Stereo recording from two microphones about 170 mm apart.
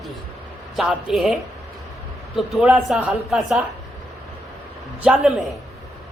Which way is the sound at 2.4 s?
Centre (ahead or behind).